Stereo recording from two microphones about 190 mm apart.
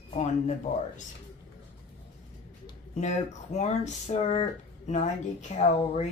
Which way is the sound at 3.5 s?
35° left (ahead or behind).